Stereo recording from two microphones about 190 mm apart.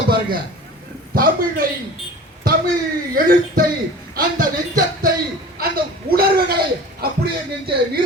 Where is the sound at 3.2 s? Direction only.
50° right (ahead or behind).